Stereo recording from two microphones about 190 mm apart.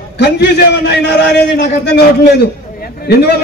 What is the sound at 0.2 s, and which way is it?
A man's voice, 60° left (ahead or behind).